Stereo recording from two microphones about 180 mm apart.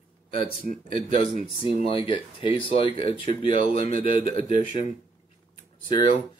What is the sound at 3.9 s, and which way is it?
Speech, 50° right (ahead or behind).